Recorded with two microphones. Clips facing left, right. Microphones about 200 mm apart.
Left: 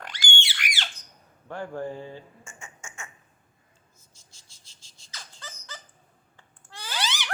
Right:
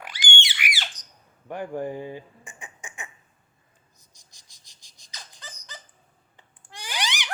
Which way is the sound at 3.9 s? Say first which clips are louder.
Left 1 dB; 15° right (ahead or behind).